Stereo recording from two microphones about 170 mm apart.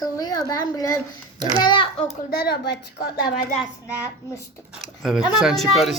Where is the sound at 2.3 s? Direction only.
70° left (ahead or behind).